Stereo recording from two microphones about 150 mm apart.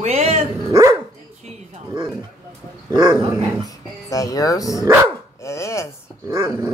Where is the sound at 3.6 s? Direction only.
25° left (ahead or behind).